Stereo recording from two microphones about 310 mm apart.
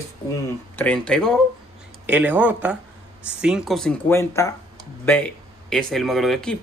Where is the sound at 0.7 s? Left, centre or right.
Centre.